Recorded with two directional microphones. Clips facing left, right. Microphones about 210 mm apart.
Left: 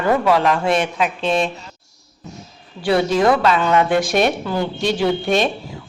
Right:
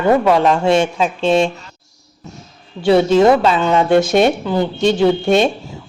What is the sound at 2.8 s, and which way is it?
A woman's voice, 25° right (ahead or behind).